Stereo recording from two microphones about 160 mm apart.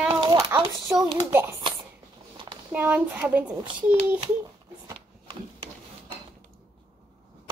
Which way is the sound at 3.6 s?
30° right (ahead or behind).